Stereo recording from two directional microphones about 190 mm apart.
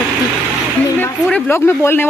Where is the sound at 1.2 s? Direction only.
10° left (ahead or behind).